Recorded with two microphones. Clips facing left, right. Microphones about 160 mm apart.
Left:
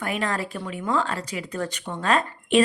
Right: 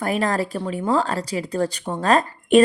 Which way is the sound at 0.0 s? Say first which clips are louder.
Right 5 dB; 40° right (ahead or behind).